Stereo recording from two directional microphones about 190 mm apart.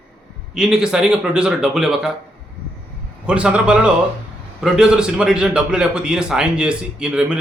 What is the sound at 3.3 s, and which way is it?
A man's voice, 5° right (ahead or behind).